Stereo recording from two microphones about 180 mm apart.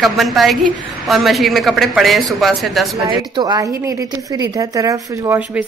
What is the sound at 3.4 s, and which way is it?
Speech, 20° right (ahead or behind).